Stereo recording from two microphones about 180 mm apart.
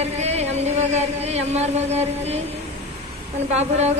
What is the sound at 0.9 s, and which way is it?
Speech, 35° right (ahead or behind).